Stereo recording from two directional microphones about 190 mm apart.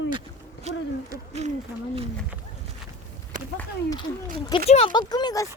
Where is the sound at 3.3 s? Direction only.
45° right (ahead or behind).